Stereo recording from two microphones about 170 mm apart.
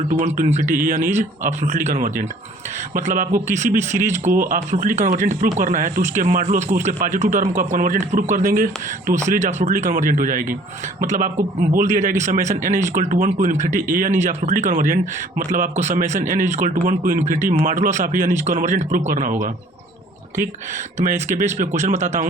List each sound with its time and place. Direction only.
0.3 s speech: 45° right (ahead or behind)
21.0 s speech: 50° right (ahead or behind)